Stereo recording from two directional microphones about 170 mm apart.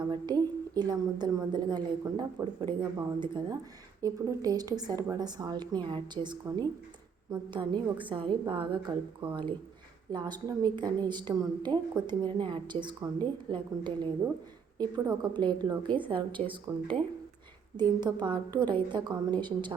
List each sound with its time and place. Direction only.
0.0 s a woman's voice: 25° right (ahead or behind)
17.7 s a woman's voice: 25° right (ahead or behind)